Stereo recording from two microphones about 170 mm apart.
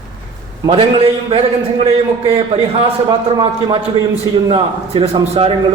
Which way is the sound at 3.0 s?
25° right (ahead or behind).